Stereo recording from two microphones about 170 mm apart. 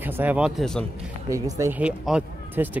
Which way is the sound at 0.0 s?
10° right (ahead or behind).